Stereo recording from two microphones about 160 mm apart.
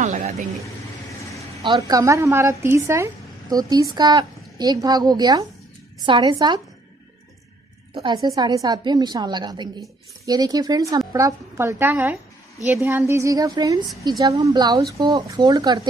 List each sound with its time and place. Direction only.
0.0 s speech: 45° right (ahead or behind)
1.6 s a woman's voice: 25° right (ahead or behind)
7.9 s a woman's voice: 25° right (ahead or behind)